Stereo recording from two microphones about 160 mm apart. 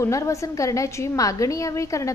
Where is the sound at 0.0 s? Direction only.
20° left (ahead or behind).